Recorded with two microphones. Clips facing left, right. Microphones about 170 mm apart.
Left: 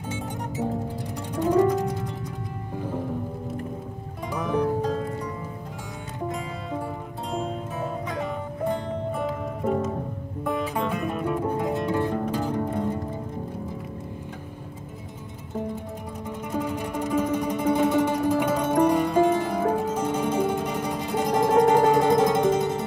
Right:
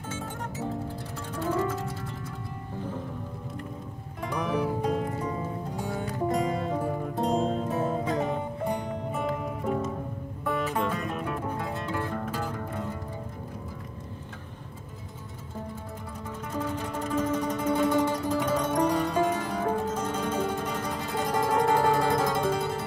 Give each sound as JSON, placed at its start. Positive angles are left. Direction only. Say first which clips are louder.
{"t": 0.1, "sound": "music", "louder": "left 4 dB", "side_deg": 15}
{"t": 4.3, "sound": "music", "louder": "left 4 dB", "side_deg": 0}
{"t": 6.3, "sound": "music", "louder": "right 4 dB", "side_deg": -45}
{"t": 10.9, "sound": "music", "louder": "left 4 dB", "side_deg": 10}
{"t": 16.5, "sound": "music", "louder": "left 4 dB", "side_deg": 15}